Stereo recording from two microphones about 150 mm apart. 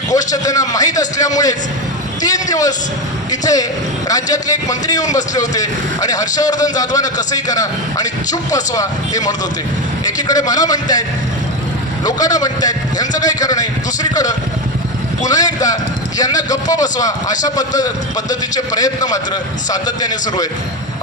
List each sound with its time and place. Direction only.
0.1 s a man's voice: 25° left (ahead or behind)
12.0 s a man's voice: 25° left (ahead or behind)